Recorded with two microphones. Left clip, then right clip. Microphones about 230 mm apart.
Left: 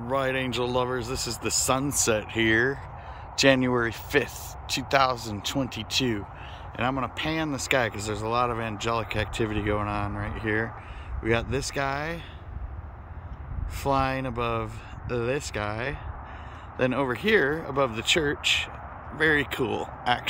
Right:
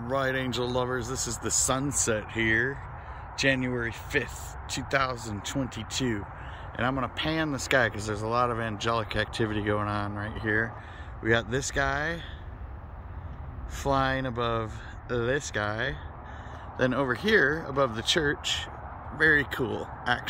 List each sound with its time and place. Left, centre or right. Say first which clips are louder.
0.1 s speech: left 2 dB; centre
1.0 s speech: left 2 dB; left
1.7 s speech: left 5 dB; centre
13.8 s speech: left 1 dB; centre